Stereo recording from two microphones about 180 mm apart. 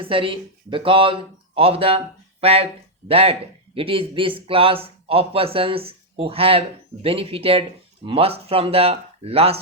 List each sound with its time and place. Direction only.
0.0 s speech: 30° right (ahead or behind)